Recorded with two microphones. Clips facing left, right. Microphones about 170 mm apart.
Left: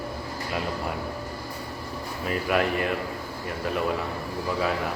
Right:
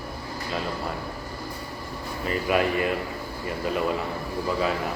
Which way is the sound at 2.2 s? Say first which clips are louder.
Right 1 dB; 5° right (ahead or behind).